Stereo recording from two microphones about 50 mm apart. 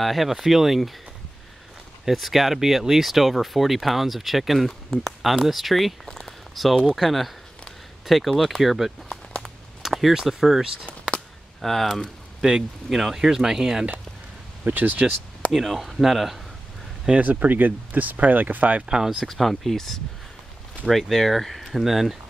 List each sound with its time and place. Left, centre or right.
0.0 s speech: centre
2.0 s speech: centre
6.0 s a sound: centre
6.8 s speech: centre
9.4 s a sound: centre
11.6 s speech: centre
12.4 s speech: centre
14.7 s speech: right
15.5 s speech: centre
17.1 s speech: right
18.9 s speech: centre
19.1 s speech: centre